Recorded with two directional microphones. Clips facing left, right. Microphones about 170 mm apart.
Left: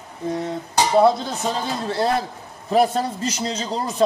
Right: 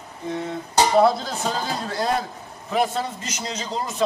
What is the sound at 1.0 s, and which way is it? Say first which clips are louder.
Speech: left 3 dB; 25° left (ahead or behind).